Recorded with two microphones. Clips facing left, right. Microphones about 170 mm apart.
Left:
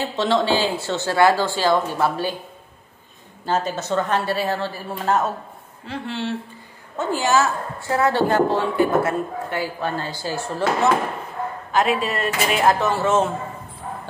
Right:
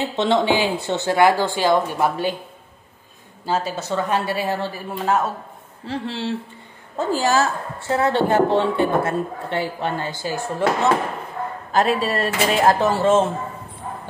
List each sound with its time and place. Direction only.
0.0 s a woman's voice: 20° right (ahead or behind)
3.4 s a woman's voice: 10° right (ahead or behind)
5.9 s a woman's voice: 35° right (ahead or behind); by 10.6 s 20° right (ahead or behind)
11.7 s a woman's voice: 35° right (ahead or behind)